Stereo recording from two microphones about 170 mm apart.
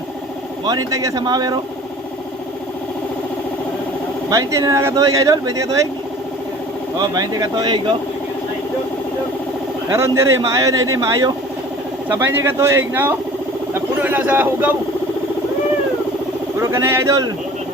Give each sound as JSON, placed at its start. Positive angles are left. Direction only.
{"t": 0.6, "sound": "speech", "side_deg": -20}
{"t": 4.3, "sound": "speech", "side_deg": -20}
{"t": 7.1, "sound": "speech", "side_deg": -25}
{"t": 9.9, "sound": "speech", "side_deg": -15}
{"t": 16.6, "sound": "speech", "side_deg": -15}